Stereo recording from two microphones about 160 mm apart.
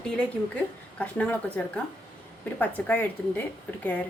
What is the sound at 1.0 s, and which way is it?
A woman's voice, 10° left (ahead or behind).